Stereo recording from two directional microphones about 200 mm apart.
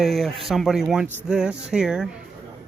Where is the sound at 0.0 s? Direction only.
Centre (ahead or behind).